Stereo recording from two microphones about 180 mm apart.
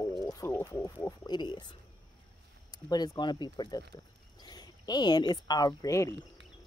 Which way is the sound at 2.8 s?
20° left (ahead or behind).